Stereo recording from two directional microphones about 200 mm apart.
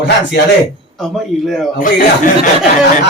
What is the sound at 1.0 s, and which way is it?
Speech, centre (ahead or behind).